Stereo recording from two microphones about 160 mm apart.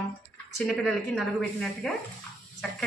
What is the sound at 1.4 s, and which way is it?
Speech, 5° left (ahead or behind).